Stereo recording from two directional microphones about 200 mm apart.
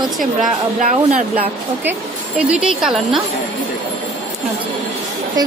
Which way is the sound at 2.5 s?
5° right (ahead or behind).